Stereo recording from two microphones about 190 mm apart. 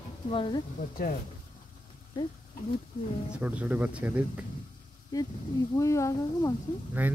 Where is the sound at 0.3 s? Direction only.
25° left (ahead or behind).